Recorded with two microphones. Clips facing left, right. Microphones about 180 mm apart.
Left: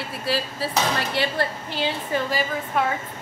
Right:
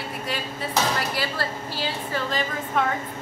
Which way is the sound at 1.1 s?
20° left (ahead or behind).